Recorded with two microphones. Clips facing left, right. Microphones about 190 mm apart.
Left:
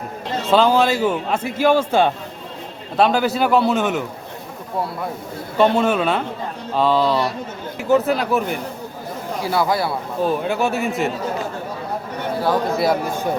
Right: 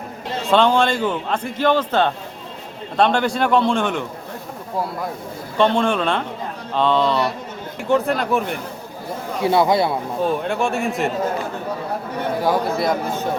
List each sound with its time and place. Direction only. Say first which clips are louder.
0.4 s a man's voice: left 1 dB; 5° left (ahead or behind)
5.5 s a man's voice: left 1 dB; 5° left (ahead or behind)
9.4 s speech: right 4 dB; 25° right (ahead or behind)
10.2 s a man's voice: left 2 dB; centre (ahead or behind)
12.7 s a man's voice: left 2 dB; 5° left (ahead or behind)